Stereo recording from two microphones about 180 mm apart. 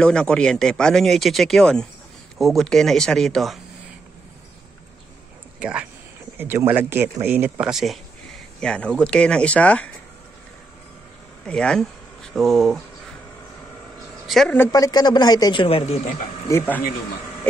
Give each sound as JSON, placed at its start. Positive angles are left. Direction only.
{"t": 0.0, "sound": "speech", "side_deg": 5}
{"t": 5.6, "sound": "speech", "side_deg": -5}
{"t": 11.4, "sound": "speech", "side_deg": 5}
{"t": 14.2, "sound": "a woman's voice", "side_deg": 0}
{"t": 14.6, "sound": "speech", "side_deg": 20}
{"t": 16.4, "sound": "speech", "side_deg": 10}